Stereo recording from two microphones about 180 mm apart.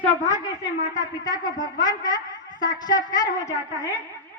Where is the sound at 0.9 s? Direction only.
20° left (ahead or behind).